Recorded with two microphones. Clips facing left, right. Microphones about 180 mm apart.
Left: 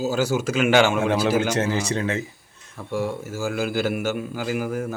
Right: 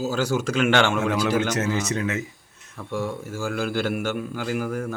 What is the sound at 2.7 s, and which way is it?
A man's voice, centre (ahead or behind).